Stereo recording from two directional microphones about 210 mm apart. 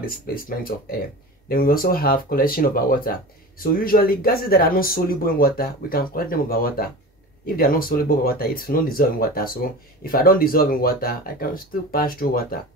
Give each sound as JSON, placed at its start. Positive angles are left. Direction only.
{"t": 0.0, "sound": "speech", "side_deg": 45}